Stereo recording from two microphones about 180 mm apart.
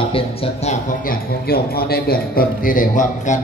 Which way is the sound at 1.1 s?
60° left (ahead or behind).